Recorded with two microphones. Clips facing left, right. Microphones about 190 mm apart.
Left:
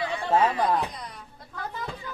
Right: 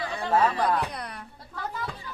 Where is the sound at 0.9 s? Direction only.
65° right (ahead or behind).